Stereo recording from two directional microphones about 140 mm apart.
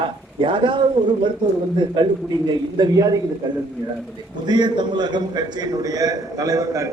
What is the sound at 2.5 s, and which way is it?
Speech, 30° right (ahead or behind).